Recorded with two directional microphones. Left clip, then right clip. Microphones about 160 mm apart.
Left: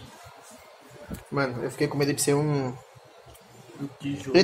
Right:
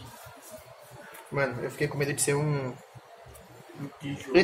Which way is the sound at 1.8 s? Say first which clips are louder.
Left 4 dB; 40° left (ahead or behind).